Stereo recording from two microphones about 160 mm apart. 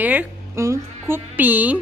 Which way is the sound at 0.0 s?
10° right (ahead or behind).